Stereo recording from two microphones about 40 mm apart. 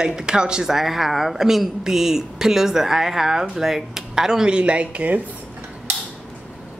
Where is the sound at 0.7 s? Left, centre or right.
Centre.